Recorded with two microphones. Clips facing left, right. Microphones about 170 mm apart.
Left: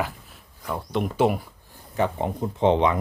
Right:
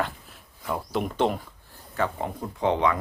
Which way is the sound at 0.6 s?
Centre (ahead or behind).